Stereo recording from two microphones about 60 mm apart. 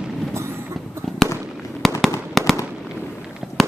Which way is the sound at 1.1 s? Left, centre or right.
Centre.